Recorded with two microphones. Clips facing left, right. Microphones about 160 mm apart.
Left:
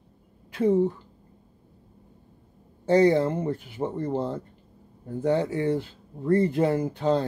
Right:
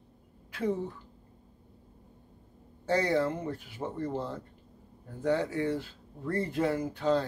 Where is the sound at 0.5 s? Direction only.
20° left (ahead or behind).